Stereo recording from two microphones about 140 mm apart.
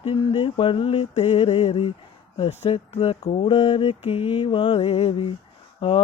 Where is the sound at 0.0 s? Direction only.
40° left (ahead or behind).